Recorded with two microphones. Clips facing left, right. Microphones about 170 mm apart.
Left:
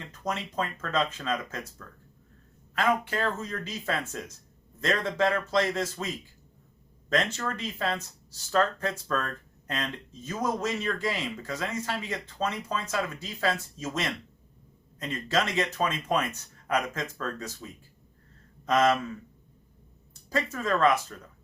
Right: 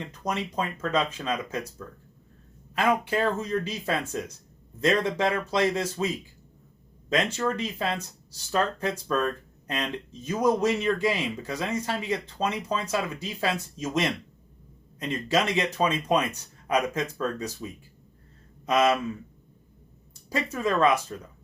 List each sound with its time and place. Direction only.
0.0 s speech: 15° right (ahead or behind)
2.7 s speech: 15° right (ahead or behind)
7.1 s speech: 15° right (ahead or behind)
20.3 s speech: 15° right (ahead or behind)